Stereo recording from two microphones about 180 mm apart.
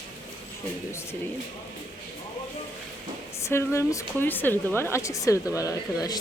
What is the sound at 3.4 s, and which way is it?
A woman's voice, 15° left (ahead or behind).